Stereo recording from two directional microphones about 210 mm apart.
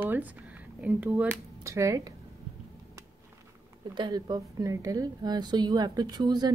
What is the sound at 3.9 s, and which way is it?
A woman's voice, 20° right (ahead or behind).